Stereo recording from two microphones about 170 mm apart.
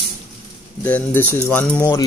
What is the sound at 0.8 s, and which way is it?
Speech, 10° left (ahead or behind).